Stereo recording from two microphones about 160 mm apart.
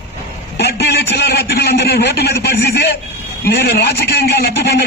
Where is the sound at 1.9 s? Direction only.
90° left.